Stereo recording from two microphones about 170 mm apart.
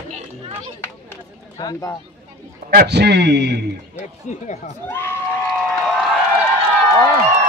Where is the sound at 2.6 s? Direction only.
70° right (ahead or behind).